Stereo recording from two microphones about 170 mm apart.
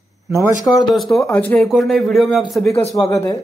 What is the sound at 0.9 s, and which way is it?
Speech, centre (ahead or behind).